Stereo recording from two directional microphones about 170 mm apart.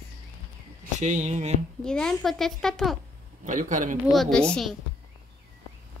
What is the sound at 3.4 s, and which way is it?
Speech, 50° right (ahead or behind).